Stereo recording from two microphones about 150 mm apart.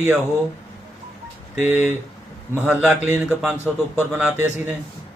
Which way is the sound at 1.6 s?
15° right (ahead or behind).